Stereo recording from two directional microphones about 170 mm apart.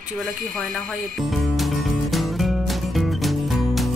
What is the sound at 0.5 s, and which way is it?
Music, centre (ahead or behind).